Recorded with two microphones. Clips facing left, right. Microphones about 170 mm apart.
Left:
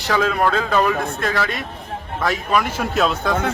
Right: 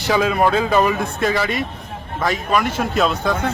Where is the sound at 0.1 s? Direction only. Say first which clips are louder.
Right 2 dB; 10° right (ahead or behind).